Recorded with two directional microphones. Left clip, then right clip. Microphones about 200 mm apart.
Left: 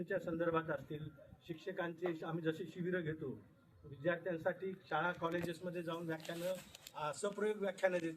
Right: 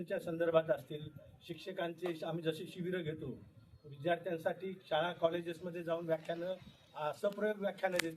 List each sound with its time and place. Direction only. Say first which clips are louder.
0.0 s a man's voice: right 2 dB; centre (ahead or behind)